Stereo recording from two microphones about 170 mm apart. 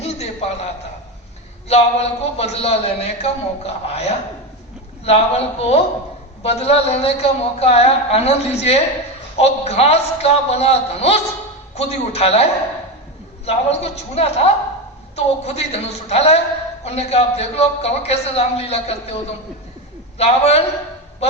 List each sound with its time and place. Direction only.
0.0 s a sound: 40° left (ahead or behind)
1.6 s a man's voice: 40° left (ahead or behind)
20.1 s a man's voice: 40° left (ahead or behind)